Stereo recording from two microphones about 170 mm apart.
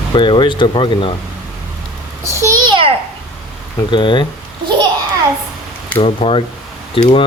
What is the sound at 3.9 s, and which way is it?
Speech, 30° left (ahead or behind).